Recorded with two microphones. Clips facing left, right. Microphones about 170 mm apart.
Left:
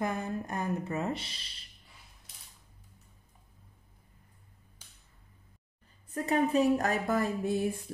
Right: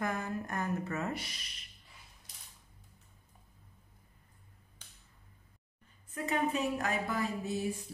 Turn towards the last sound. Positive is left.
turn(degrees=55)  # may be behind; listen again after turning